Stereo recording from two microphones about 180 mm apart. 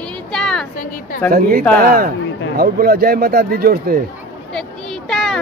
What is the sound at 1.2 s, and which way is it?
Speech, 50° right (ahead or behind).